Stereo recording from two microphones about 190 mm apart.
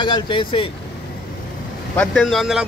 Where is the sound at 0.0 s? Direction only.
25° left (ahead or behind).